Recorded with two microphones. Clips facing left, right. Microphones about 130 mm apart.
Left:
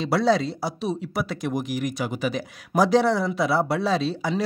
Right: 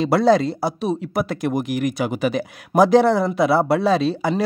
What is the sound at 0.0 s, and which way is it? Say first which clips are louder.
Speech: right 5 dB; 50° right (ahead or behind).